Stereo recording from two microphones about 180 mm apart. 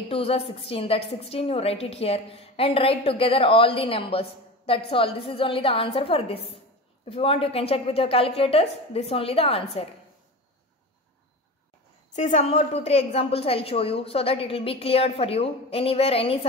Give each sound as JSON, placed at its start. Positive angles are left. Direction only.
{"t": 0.1, "sound": "a woman's voice", "side_deg": 30}
{"t": 12.2, "sound": "a woman's voice", "side_deg": 40}